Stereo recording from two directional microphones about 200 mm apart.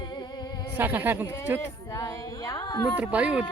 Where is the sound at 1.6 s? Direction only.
15° left (ahead or behind).